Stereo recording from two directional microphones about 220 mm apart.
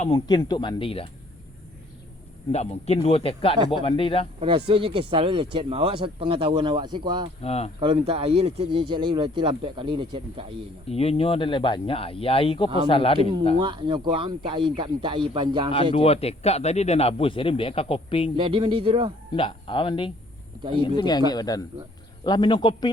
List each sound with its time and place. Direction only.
0.0 s speech: 20° left (ahead or behind)
2.5 s speech: 30° left (ahead or behind)
4.4 s speech: 25° right (ahead or behind)
7.4 s speech: 30° left (ahead or behind)
7.8 s speech: 25° right (ahead or behind)
10.8 s speech: 25° left (ahead or behind)
13.6 s speech: 20° right (ahead or behind)
15.7 s speech: 25° left (ahead or behind)
18.3 s speech: 20° right (ahead or behind)
19.3 s speech: 25° left (ahead or behind)